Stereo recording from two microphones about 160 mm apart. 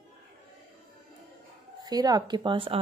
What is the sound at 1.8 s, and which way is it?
Speech, 25° right (ahead or behind).